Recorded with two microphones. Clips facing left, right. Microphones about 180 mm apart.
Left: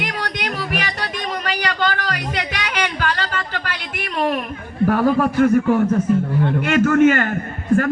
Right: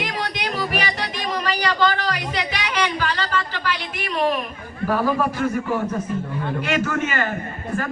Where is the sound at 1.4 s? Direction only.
55° left (ahead or behind).